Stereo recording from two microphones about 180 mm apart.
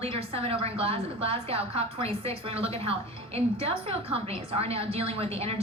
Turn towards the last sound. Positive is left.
turn(degrees=-35)  # may be behind; listen again after turning